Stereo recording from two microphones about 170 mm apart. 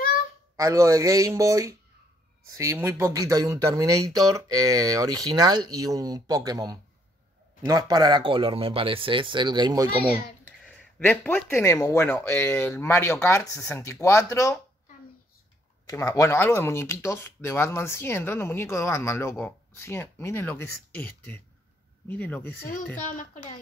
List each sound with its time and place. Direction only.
0.6 s speech: 20° right (ahead or behind)
11.1 s speech: 10° left (ahead or behind)
15.9 s speech: 20° left (ahead or behind)